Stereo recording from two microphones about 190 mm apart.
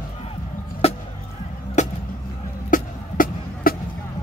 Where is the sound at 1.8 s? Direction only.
40° left (ahead or behind).